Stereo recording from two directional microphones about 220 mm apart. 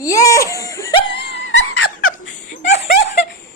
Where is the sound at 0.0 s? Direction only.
15° left (ahead or behind).